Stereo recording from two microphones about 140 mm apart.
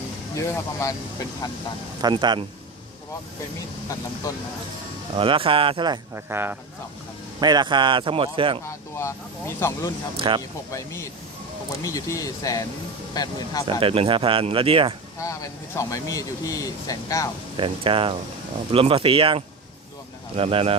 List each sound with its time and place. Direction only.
0.3 s speech: 20° left (ahead or behind)
2.0 s speech: 30° right (ahead or behind)
4.2 s speech: 25° left (ahead or behind)
5.1 s speech: 40° right (ahead or behind)
6.1 s speech: 15° right (ahead or behind)
7.3 s speech: 30° right (ahead or behind)
8.6 s speech: 20° left (ahead or behind)
10.2 s speech: 40° right (ahead or behind)
10.7 s speech: 20° left (ahead or behind)
13.7 s speech: 40° right (ahead or behind)
15.2 s speech: 25° left (ahead or behind)
17.6 s speech: 40° right (ahead or behind)